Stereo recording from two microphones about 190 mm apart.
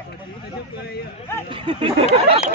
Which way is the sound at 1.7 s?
30° right (ahead or behind).